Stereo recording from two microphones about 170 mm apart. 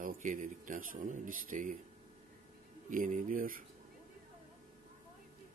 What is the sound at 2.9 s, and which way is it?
Speech, 50° right (ahead or behind).